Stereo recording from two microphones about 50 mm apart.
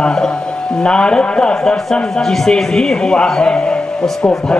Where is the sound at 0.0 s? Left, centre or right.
Centre.